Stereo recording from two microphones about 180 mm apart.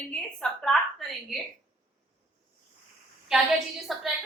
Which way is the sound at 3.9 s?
Centre (ahead or behind).